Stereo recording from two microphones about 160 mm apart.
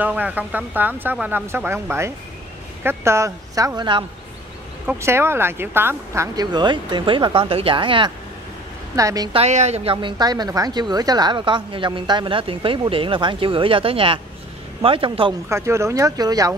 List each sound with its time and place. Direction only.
0.0 s speech: 10° right (ahead or behind); by 4.0 s 25° right (ahead or behind)
4.8 s speech: 15° right (ahead or behind); by 8.1 s 30° right (ahead or behind)
8.9 s speech: 20° right (ahead or behind)
9.3 s a woman's voice: 40° right (ahead or behind)
9.9 s a woman's voice: 30° right (ahead or behind)
15.4 s speech: 15° right (ahead or behind)